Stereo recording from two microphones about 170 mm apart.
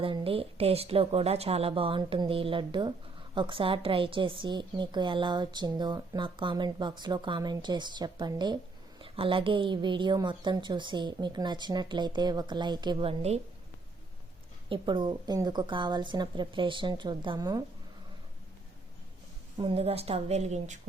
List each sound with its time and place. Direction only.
0.0 s a woman's voice: 35° right (ahead or behind)
14.7 s a woman's voice: 30° right (ahead or behind)
19.5 s a woman's voice: 30° right (ahead or behind)